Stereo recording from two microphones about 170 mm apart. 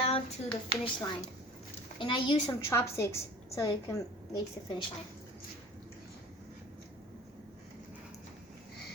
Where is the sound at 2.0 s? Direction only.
30° left (ahead or behind).